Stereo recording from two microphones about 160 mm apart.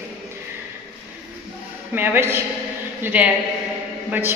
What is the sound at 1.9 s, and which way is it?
A woman's voice, 15° right (ahead or behind).